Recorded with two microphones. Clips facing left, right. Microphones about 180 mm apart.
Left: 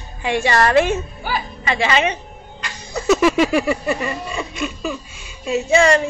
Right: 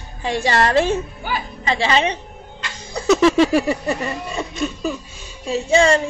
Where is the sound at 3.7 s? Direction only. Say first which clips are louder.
Left 1 dB; 40° right (ahead or behind).